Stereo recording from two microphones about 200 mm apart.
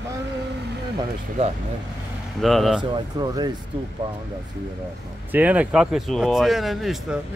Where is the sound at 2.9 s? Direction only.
20° right (ahead or behind).